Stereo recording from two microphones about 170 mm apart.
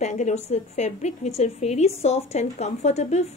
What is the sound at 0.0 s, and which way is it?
A woman's voice, 45° left (ahead or behind).